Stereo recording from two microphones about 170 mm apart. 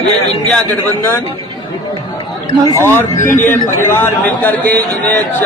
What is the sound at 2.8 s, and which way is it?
Speech, 15° left (ahead or behind).